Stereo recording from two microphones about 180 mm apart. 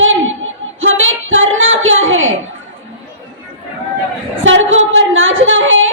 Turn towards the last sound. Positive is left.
turn(degrees=-90)